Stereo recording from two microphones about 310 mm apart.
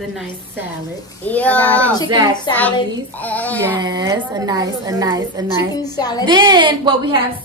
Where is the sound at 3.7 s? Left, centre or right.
Centre.